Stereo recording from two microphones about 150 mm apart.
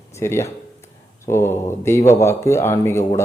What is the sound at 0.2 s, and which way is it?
Speech, 15° left (ahead or behind).